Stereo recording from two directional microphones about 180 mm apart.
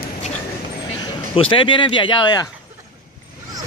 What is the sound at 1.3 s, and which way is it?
Speech, 30° left (ahead or behind).